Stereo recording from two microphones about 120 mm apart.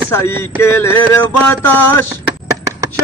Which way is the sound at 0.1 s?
20° left (ahead or behind).